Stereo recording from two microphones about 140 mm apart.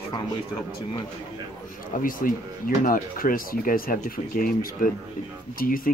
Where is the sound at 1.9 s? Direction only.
70° left (ahead or behind).